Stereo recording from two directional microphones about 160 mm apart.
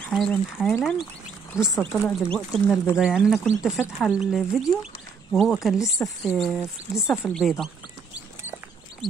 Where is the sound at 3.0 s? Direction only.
Centre (ahead or behind).